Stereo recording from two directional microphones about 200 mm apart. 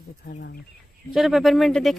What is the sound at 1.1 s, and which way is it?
Speech, centre (ahead or behind).